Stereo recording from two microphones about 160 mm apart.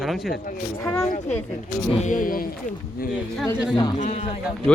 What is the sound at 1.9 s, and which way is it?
Speech, 50° left (ahead or behind).